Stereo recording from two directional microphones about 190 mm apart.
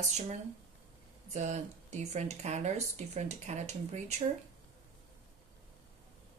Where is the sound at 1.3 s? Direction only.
35° right (ahead or behind).